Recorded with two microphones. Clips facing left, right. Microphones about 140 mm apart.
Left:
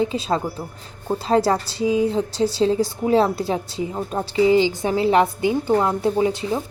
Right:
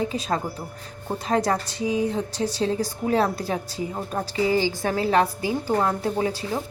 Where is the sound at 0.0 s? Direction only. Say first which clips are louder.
Left 4 dB; 25° left (ahead or behind).